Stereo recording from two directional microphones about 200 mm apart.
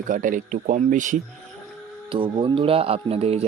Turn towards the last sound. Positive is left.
turn(degrees=-30)  # may be behind; listen again after turning